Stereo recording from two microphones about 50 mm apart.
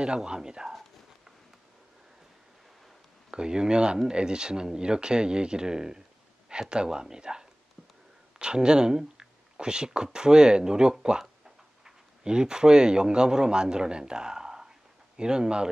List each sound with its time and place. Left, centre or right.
0.0 s speech: centre
3.3 s a man's voice: centre